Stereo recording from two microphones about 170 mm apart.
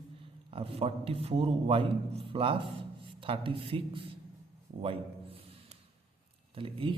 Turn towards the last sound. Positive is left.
turn(degrees=-30)  # may be behind; listen again after turning